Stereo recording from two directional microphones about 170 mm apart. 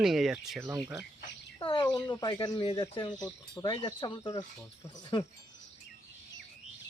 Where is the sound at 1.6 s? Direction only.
30° left (ahead or behind).